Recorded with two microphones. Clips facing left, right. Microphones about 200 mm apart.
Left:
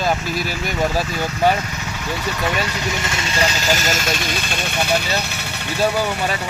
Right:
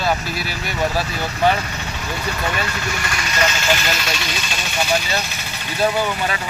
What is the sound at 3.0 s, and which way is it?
Speech, 25° left (ahead or behind).